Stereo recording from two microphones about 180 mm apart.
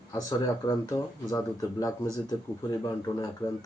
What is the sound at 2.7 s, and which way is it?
Speech, 20° left (ahead or behind).